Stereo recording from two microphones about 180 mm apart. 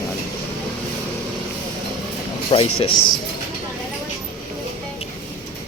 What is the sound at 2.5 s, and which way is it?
Speech, 30° left (ahead or behind).